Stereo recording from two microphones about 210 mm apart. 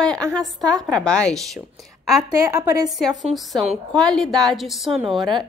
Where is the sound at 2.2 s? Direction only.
15° right (ahead or behind).